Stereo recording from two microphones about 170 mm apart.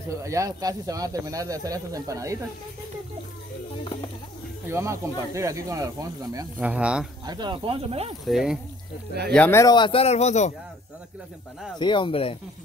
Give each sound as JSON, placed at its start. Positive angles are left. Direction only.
{"t": 0.1, "sound": "speech", "side_deg": -20}
{"t": 4.6, "sound": "speech", "side_deg": -15}
{"t": 6.6, "sound": "speech", "side_deg": -5}
{"t": 7.2, "sound": "speech", "side_deg": -25}
{"t": 8.3, "sound": "speech", "side_deg": 0}
{"t": 9.3, "sound": "speech", "side_deg": 10}
{"t": 11.8, "sound": "speech", "side_deg": 30}